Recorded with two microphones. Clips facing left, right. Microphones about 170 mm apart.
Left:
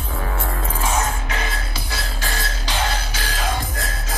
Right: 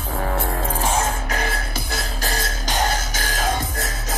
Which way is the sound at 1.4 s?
45° right (ahead or behind).